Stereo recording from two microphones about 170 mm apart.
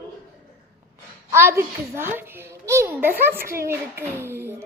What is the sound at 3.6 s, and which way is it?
A child's voice, 15° right (ahead or behind).